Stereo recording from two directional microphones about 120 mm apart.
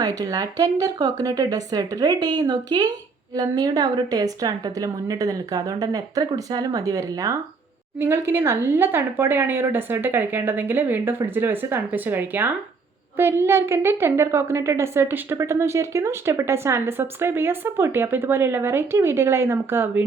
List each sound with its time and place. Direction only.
0.0 s a woman's voice: 30° right (ahead or behind)